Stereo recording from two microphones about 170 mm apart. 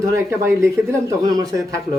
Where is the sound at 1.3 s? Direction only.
25° right (ahead or behind).